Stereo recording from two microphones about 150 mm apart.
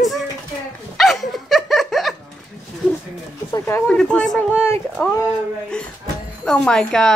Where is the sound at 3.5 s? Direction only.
15° left (ahead or behind).